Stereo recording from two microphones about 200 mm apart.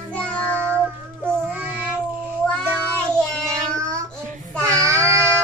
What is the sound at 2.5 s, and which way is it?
Child singing, 5° left (ahead or behind).